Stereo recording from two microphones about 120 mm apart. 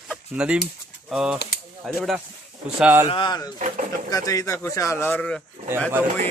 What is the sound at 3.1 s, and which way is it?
Speech, 40° left (ahead or behind).